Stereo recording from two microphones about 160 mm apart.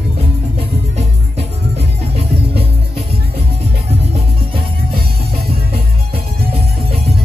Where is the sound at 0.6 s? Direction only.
40° right (ahead or behind).